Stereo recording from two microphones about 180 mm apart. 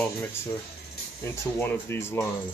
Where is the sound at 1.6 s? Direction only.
15° left (ahead or behind).